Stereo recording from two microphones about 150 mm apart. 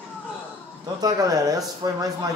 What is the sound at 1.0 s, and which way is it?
Speech, 25° right (ahead or behind).